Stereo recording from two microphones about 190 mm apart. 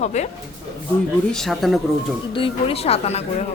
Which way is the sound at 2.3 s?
25° left (ahead or behind).